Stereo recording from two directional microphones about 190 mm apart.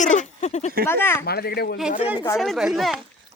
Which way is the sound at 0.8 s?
10° left (ahead or behind).